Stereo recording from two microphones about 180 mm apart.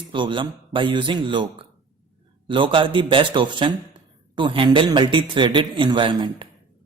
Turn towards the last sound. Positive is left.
turn(degrees=-25)  # may be behind; listen again after turning